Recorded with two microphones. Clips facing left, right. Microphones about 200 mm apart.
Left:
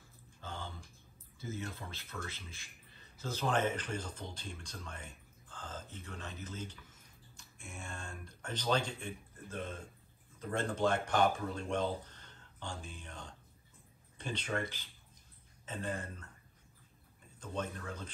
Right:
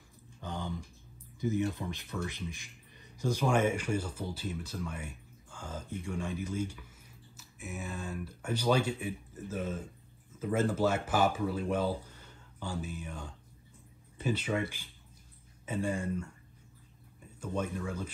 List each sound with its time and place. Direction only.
0.4 s a sound: 15° right (ahead or behind)
1.4 s speech: 15° right (ahead or behind)
17.4 s speech: 10° right (ahead or behind)